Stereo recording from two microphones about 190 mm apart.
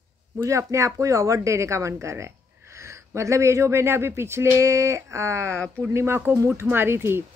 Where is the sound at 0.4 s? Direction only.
15° right (ahead or behind).